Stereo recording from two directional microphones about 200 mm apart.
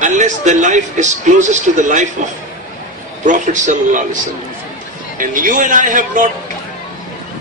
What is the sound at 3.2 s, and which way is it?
Speech, 40° right (ahead or behind).